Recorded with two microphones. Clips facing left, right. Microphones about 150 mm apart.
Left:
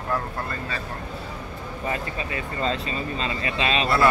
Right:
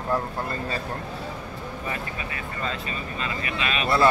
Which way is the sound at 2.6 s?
30° left (ahead or behind).